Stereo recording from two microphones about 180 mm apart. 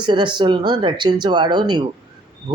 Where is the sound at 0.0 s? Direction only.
25° right (ahead or behind).